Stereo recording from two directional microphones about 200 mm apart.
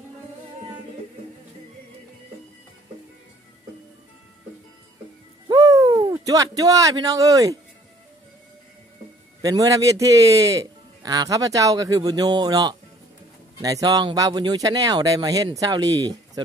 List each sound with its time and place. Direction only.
5.5 s speech: 20° right (ahead or behind)
9.4 s a man's voice: 15° right (ahead or behind)